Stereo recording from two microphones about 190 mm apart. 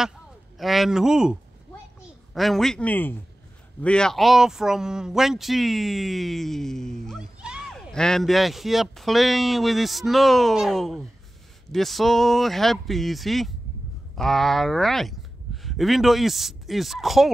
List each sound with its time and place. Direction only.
0.6 s speech: centre (ahead or behind)